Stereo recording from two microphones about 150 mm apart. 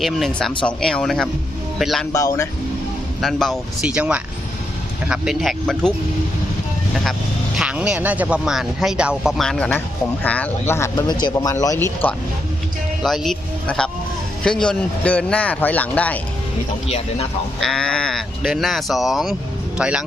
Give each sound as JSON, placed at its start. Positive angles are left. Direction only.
{"t": 0.0, "sound": "speech", "side_deg": 0}
{"t": 2.1, "sound": "speech", "side_deg": 20}
{"t": 3.2, "sound": "speech", "side_deg": 0}
{"t": 7.0, "sound": "a man's voice", "side_deg": 0}
{"t": 13.0, "sound": "a man's voice", "side_deg": 0}
{"t": 17.6, "sound": "speech", "side_deg": 5}